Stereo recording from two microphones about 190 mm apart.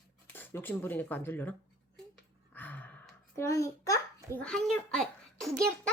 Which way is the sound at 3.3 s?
15° left (ahead or behind).